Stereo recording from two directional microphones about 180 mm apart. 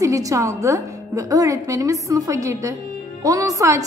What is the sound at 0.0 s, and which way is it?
A woman's voice, 20° right (ahead or behind).